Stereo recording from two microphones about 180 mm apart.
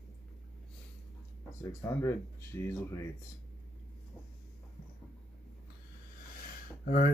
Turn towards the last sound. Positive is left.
turn(degrees=50)  # may be behind; listen again after turning